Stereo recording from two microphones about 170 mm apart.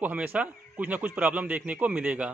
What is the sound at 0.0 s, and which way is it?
Speech, 10° right (ahead or behind).